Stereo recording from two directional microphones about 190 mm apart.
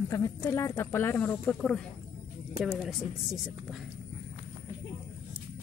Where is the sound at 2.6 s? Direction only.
5° right (ahead or behind).